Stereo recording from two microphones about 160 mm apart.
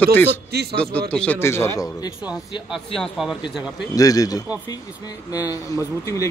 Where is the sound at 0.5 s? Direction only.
90° right.